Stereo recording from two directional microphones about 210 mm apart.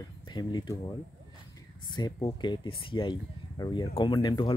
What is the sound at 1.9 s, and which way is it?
Speech, 20° left (ahead or behind).